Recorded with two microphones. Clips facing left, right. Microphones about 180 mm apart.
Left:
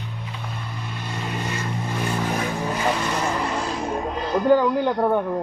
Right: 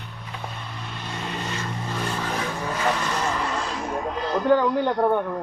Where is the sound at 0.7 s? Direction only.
5° left (ahead or behind).